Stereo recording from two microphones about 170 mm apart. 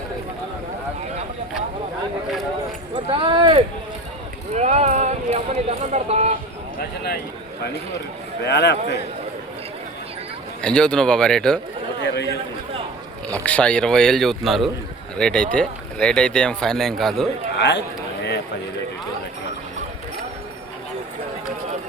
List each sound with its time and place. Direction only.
2.9 s a sound: 30° right (ahead or behind)
4.5 s a sound: 40° right (ahead or behind)
6.7 s speech: 65° left (ahead or behind)
8.4 s a man's voice: 80° left
10.6 s speech: 5° left (ahead or behind)
11.9 s a man's voice: 85° left
13.4 s speech: 5° left (ahead or behind)
17.6 s a man's voice: 85° left